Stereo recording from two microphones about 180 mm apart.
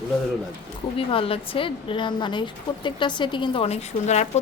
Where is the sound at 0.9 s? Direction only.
30° left (ahead or behind).